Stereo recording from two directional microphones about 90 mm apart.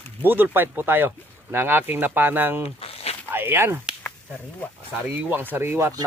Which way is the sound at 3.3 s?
25° right (ahead or behind).